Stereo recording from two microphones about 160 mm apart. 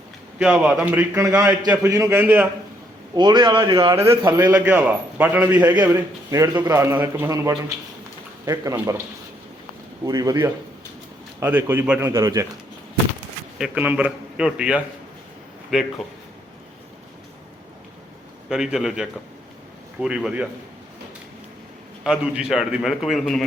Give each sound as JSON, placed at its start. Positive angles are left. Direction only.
{"t": 0.3, "sound": "a man's voice", "side_deg": -5}
{"t": 1.4, "sound": "a man's voice", "side_deg": -25}
{"t": 3.2, "sound": "a man's voice", "side_deg": -25}
{"t": 3.9, "sound": "a man's voice", "side_deg": -15}
{"t": 5.7, "sound": "a man's voice", "side_deg": -20}
{"t": 10.1, "sound": "a man's voice", "side_deg": -25}
{"t": 13.6, "sound": "a man's voice", "side_deg": -10}
{"t": 18.4, "sound": "a man's voice", "side_deg": -5}
{"t": 22.0, "sound": "a man's voice", "side_deg": -5}